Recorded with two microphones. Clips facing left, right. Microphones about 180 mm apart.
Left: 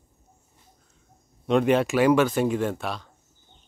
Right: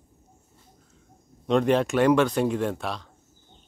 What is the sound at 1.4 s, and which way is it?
Speech, 5° left (ahead or behind).